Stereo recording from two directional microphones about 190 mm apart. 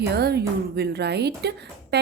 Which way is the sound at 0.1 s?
60° right (ahead or behind).